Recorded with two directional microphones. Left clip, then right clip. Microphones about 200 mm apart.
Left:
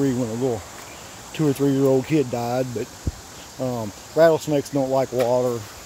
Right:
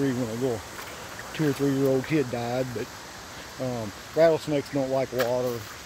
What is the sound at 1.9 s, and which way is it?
Speech, 25° left (ahead or behind).